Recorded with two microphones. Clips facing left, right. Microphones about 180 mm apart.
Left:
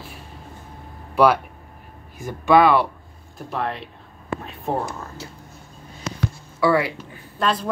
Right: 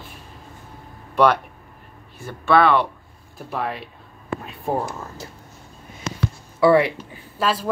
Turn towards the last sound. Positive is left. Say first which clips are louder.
# even
turn(degrees=-5)  # may be behind; listen again after turning